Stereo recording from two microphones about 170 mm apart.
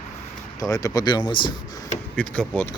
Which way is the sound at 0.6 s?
20° left (ahead or behind).